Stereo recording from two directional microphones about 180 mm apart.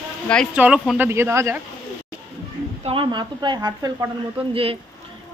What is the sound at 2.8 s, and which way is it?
Speech, 30° right (ahead or behind).